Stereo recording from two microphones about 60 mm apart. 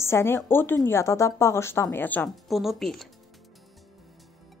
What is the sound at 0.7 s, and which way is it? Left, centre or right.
A woman's voice, left.